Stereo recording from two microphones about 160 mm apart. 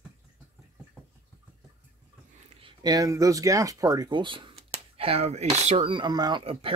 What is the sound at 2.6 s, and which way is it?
Speech, 30° right (ahead or behind).